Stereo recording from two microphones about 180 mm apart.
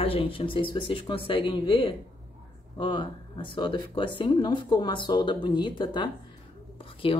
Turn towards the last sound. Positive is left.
turn(degrees=30)  # may be behind; listen again after turning